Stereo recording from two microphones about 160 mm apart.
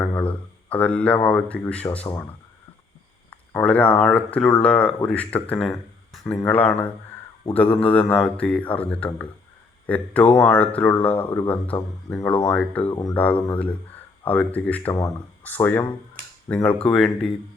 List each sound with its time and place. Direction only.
0.2 s speech: 10° left (ahead or behind)
3.2 s a sound: 10° left (ahead or behind)
4.0 s speech: 5° left (ahead or behind)
12.9 s speech: 20° left (ahead or behind)
13.1 s speech: 10° left (ahead or behind)